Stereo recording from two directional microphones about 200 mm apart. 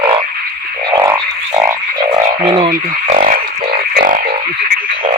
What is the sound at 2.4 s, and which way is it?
Speech, 25° right (ahead or behind).